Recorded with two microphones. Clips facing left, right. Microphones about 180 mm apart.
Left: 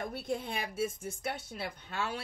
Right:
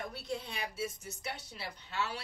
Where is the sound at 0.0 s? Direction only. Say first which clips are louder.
Left 4 dB; 50° left (ahead or behind).